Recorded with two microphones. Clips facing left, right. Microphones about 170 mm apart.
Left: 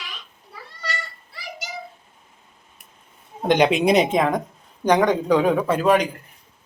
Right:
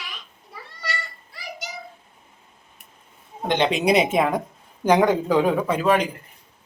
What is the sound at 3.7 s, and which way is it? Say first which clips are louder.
Speech: left 2 dB; centre (ahead or behind).